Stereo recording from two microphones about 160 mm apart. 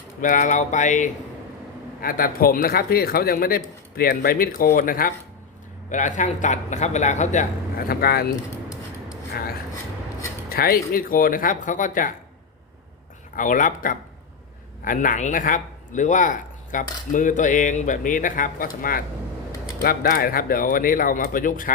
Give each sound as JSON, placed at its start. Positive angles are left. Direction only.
{"t": 0.2, "sound": "a man's voice", "side_deg": 55}
{"t": 2.0, "sound": "speech", "side_deg": 65}
{"t": 5.9, "sound": "a man's voice", "side_deg": 50}
{"t": 7.8, "sound": "speech", "side_deg": 70}
{"t": 9.3, "sound": "speech", "side_deg": 70}
{"t": 13.3, "sound": "speech", "side_deg": 55}